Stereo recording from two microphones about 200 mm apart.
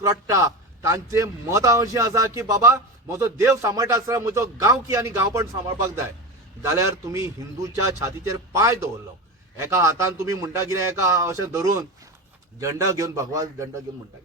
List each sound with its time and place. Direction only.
0.0 s a man's voice: 15° right (ahead or behind)
7.1 s a man's voice: 15° right (ahead or behind)